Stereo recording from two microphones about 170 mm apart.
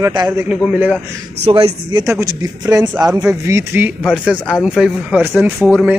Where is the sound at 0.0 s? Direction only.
20° right (ahead or behind).